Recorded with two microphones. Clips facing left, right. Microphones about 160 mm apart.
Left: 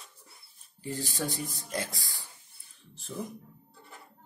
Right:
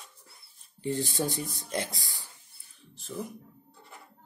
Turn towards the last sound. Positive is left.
turn(degrees=0)  # may be behind; listen again after turning